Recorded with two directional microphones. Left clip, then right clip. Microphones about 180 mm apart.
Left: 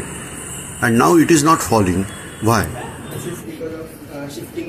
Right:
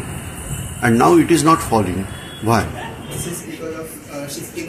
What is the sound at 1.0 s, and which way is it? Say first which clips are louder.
Speech: even; 25° left (ahead or behind).